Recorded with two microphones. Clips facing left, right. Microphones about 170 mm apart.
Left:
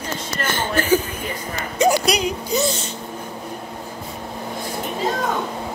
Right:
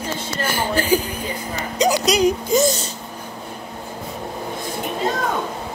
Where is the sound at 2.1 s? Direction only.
45° right (ahead or behind).